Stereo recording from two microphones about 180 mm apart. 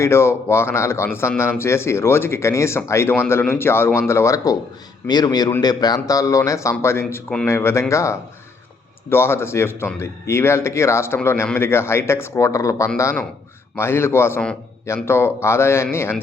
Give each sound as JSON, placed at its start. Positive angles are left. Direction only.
{"t": 0.0, "sound": "a man's voice", "side_deg": 15}